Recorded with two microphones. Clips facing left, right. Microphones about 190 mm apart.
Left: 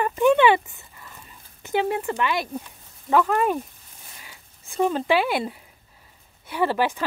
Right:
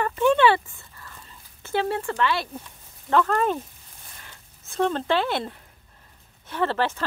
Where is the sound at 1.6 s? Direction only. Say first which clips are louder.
Left 2 dB; 15° left (ahead or behind).